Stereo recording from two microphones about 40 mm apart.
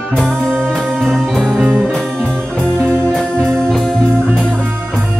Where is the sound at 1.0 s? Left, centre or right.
Centre.